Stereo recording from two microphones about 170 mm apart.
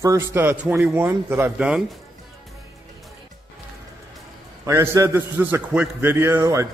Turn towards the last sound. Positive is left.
turn(degrees=-20)  # may be behind; listen again after turning